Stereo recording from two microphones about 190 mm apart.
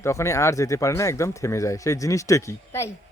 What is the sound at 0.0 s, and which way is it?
Speech, 15° left (ahead or behind).